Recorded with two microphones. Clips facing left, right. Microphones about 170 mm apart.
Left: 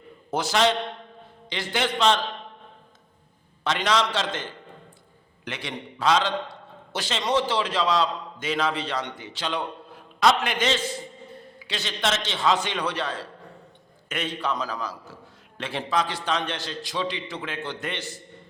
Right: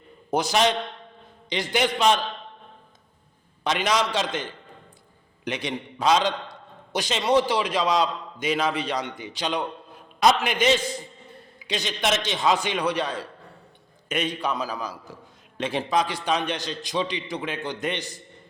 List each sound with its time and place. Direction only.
0.3 s a man's voice: 15° right (ahead or behind)
3.6 s a man's voice: 15° right (ahead or behind)
5.5 s a man's voice: 20° right (ahead or behind)